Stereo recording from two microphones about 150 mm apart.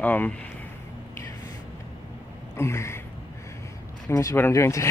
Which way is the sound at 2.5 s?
20° left (ahead or behind).